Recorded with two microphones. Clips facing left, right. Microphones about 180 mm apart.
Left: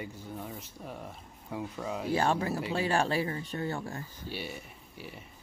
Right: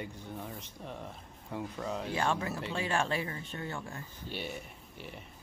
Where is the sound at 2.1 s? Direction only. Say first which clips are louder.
Left 5 dB; 35° left (ahead or behind).